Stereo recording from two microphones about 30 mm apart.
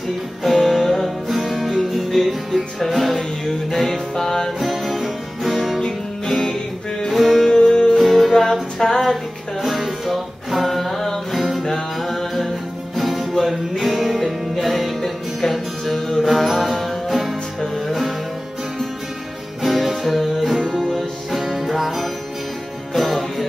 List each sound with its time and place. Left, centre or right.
0.4 s music: centre
4.1 s music: left
4.6 s music: centre
5.8 s music: centre
7.2 s music: centre
7.4 s music: centre
7.9 s music: centre
8.7 s a sound: centre
9.6 s music: centre
15.8 s music: centre
16.2 s music: centre
17.6 s music: centre
19.6 s music: centre